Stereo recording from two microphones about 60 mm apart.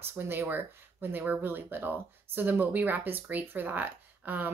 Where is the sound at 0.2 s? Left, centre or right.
Right.